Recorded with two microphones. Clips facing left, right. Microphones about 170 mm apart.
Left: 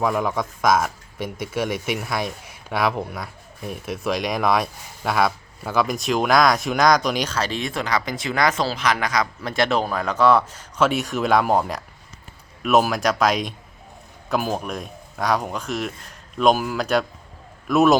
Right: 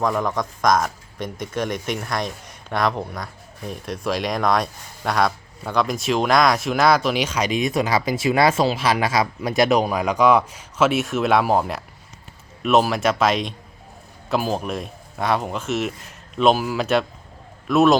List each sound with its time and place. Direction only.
0.0 s a man's voice: 5° left (ahead or behind)